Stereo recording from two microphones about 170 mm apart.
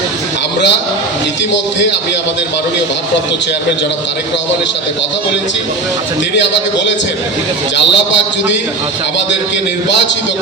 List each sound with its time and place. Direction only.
6.3 s a man's voice: 90° left
7.9 s a man's voice: 90° left